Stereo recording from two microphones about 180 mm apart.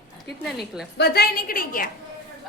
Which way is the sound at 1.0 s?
60° left (ahead or behind).